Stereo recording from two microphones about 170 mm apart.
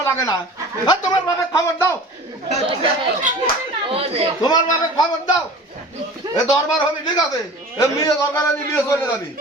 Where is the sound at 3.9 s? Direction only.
35° right (ahead or behind).